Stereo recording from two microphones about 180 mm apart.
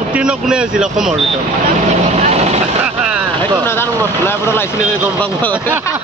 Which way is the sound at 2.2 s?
35° right (ahead or behind).